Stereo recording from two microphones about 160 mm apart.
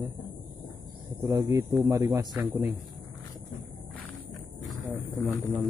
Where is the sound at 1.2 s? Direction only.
20° right (ahead or behind).